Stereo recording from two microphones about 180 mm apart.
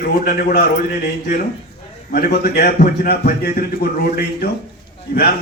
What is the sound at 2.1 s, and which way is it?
Speech, 65° left (ahead or behind).